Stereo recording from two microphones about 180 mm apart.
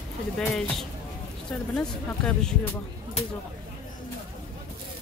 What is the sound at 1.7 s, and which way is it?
Speech, 5° left (ahead or behind).